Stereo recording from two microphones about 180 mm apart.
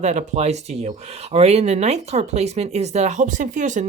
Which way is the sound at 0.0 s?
40° right (ahead or behind).